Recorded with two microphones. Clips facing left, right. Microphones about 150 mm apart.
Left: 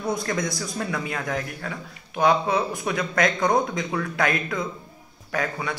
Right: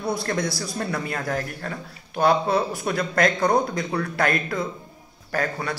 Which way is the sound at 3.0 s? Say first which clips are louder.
Right 2 dB; 10° left (ahead or behind).